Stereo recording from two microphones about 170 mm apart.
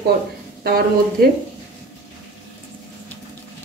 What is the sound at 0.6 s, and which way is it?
Speech, 60° right (ahead or behind).